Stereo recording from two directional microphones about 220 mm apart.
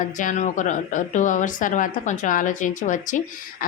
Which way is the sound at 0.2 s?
35° left (ahead or behind).